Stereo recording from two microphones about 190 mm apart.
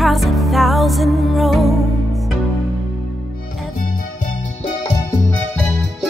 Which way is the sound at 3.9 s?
40° left (ahead or behind).